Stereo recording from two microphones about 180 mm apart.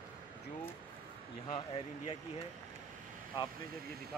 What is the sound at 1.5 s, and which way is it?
Speech, 35° left (ahead or behind).